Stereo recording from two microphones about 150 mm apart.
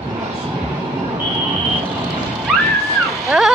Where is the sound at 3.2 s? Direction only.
5° right (ahead or behind).